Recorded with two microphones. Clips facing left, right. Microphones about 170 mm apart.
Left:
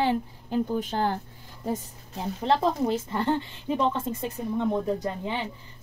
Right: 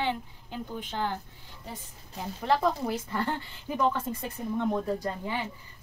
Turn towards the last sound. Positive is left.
turn(degrees=20)  # may be behind; listen again after turning